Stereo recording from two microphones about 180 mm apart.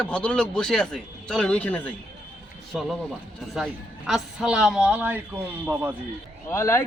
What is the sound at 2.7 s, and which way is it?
A man's voice, 5° right (ahead or behind).